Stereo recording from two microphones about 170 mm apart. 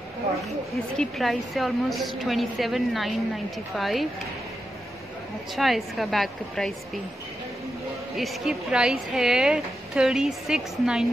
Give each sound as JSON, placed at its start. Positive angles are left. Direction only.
{"t": 0.9, "sound": "a woman's voice", "side_deg": 0}
{"t": 5.6, "sound": "a woman's voice", "side_deg": 0}
{"t": 8.2, "sound": "a woman's voice", "side_deg": 0}